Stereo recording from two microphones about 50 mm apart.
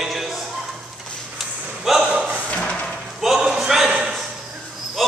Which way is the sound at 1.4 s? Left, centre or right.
Centre.